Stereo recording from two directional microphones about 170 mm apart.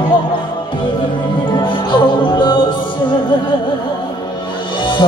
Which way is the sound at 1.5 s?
30° left (ahead or behind).